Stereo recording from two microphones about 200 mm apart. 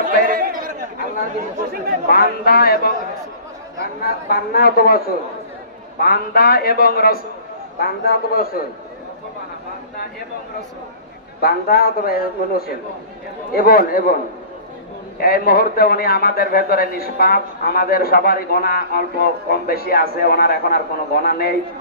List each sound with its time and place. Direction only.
0.0 s chatter: 45° right (ahead or behind)
2.0 s a man's voice: 50° left (ahead or behind)
11.4 s a man's voice: 50° left (ahead or behind)
15.1 s a man's voice: 50° left (ahead or behind)